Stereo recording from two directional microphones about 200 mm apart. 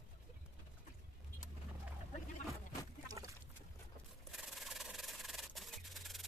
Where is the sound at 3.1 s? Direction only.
15° right (ahead or behind).